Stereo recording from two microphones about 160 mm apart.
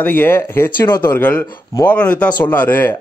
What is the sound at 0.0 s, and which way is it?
Speech, 10° left (ahead or behind).